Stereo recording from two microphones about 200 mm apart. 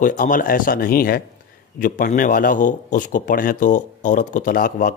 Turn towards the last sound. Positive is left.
turn(degrees=45)  # may be behind; listen again after turning